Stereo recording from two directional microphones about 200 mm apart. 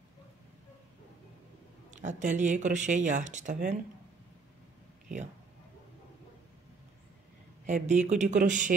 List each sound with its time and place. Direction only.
1.9 s speech: 35° right (ahead or behind)
7.6 s speech: 35° right (ahead or behind)